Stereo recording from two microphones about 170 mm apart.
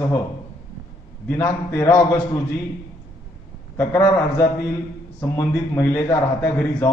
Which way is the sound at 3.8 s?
15° left (ahead or behind).